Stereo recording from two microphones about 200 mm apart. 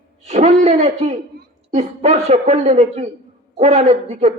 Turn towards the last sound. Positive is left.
turn(degrees=-35)  # may be behind; listen again after turning